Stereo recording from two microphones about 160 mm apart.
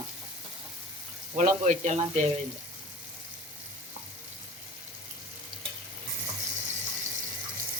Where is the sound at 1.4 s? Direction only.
45° right (ahead or behind).